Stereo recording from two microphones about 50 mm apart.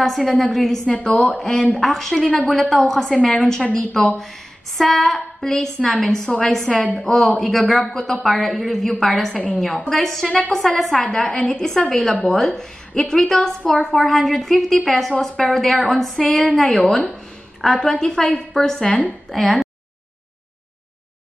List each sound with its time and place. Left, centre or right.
0.0 s a woman's voice: centre
2.2 s speech: left
2.7 s a woman's voice: centre
3.6 s speech: centre
4.7 s a woman's voice: centre
13.9 s a woman's voice: centre
15.1 s a woman's voice: centre
15.5 s a woman's voice: centre
19.3 s a woman's voice: centre